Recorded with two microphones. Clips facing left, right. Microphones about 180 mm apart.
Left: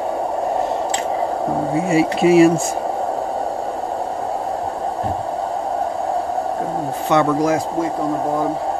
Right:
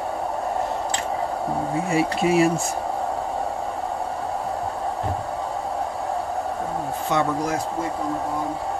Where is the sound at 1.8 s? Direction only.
90° left.